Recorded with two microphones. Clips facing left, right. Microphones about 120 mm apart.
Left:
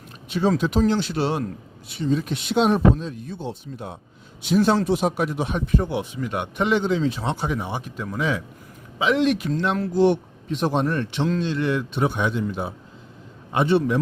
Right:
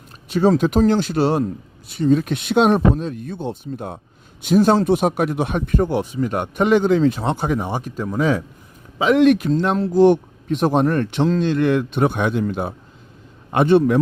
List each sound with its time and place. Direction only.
0.3 s speech: 40° right (ahead or behind)